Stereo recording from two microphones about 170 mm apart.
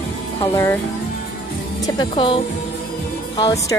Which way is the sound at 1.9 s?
25° left (ahead or behind).